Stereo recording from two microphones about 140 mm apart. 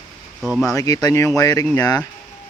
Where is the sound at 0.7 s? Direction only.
25° left (ahead or behind).